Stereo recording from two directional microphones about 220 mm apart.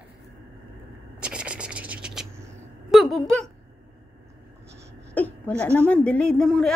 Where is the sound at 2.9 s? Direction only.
Centre (ahead or behind).